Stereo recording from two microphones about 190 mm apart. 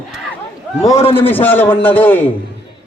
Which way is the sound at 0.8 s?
15° left (ahead or behind).